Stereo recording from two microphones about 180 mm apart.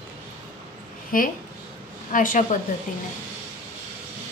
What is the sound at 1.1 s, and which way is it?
A woman's voice, 50° left (ahead or behind).